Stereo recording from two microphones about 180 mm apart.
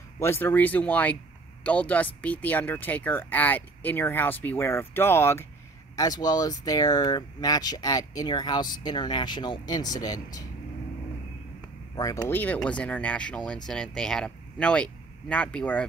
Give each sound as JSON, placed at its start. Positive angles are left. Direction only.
{"t": 0.2, "sound": "speech", "side_deg": 10}
{"t": 11.9, "sound": "speech", "side_deg": 20}